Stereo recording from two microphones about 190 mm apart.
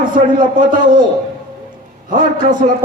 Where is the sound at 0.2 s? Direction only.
45° right (ahead or behind).